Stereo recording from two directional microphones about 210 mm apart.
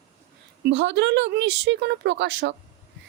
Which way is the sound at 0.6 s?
60° right (ahead or behind).